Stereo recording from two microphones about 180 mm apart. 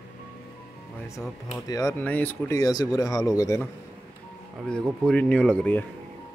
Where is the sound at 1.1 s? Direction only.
15° left (ahead or behind).